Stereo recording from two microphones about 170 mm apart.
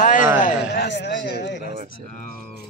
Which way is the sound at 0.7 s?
90° left.